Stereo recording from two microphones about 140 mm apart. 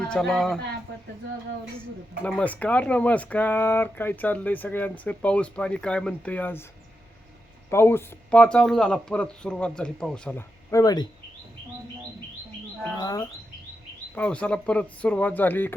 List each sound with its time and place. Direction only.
0.1 s speech: 5° left (ahead or behind)
2.4 s speech: 10° left (ahead or behind)
7.7 s speech: 15° left (ahead or behind)
10.7 s speech: 25° left (ahead or behind)
13.0 s speech: 30° left (ahead or behind)
14.2 s speech: 10° left (ahead or behind)